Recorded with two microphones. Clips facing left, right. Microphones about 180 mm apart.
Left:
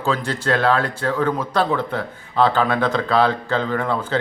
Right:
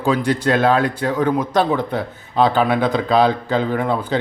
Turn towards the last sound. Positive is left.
turn(degrees=-15)  # may be behind; listen again after turning